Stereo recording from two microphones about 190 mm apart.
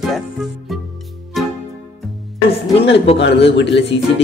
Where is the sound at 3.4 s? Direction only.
70° left (ahead or behind).